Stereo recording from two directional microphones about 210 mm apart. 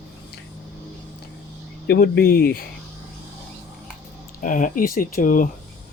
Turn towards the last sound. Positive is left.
turn(degrees=40)  # may be behind; listen again after turning